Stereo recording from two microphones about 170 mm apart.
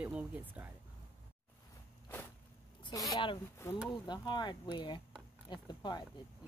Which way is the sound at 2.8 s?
20° left (ahead or behind).